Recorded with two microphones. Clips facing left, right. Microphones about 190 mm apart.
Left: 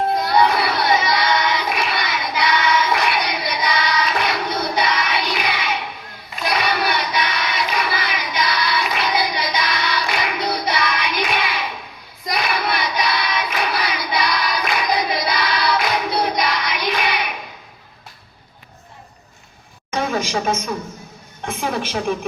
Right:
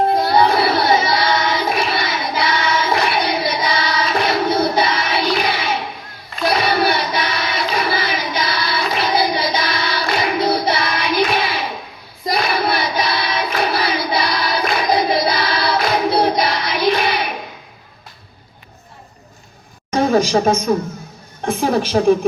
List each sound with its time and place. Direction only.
0.1 s child singing: 30° right (ahead or behind)
19.9 s a sound: 35° right (ahead or behind)
21.4 s a woman's voice: 35° right (ahead or behind)